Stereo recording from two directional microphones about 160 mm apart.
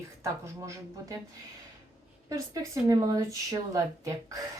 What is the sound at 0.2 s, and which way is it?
Speech, 20° right (ahead or behind).